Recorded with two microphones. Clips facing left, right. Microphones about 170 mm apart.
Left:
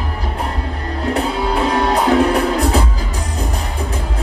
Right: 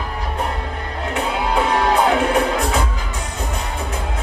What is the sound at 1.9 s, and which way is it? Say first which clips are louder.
Music: left 3 dB; 35° left (ahead or behind).